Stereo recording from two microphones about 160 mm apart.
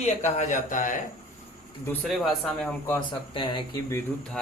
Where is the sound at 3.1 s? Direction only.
30° left (ahead or behind).